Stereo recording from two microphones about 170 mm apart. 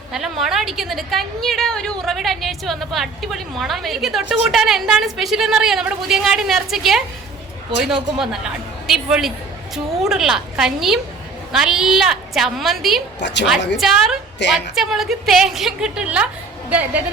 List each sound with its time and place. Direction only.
0.1 s a woman's voice: centre (ahead or behind)
8.2 s a woman's voice: centre (ahead or behind)
13.1 s a woman's voice: 90° left
13.7 s a woman's voice: centre (ahead or behind)